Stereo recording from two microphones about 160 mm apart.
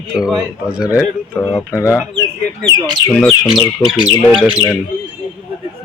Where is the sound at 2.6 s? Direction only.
25° right (ahead or behind).